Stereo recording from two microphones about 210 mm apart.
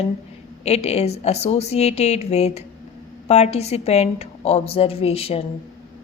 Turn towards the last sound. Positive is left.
turn(degrees=30)  # may be behind; listen again after turning